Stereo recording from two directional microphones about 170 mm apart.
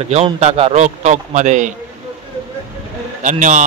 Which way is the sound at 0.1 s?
40° right (ahead or behind).